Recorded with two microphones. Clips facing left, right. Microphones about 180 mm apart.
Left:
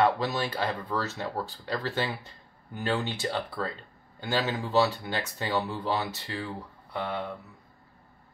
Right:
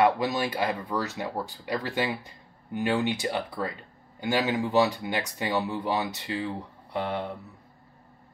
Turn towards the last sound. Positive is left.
turn(degrees=-20)  # may be behind; listen again after turning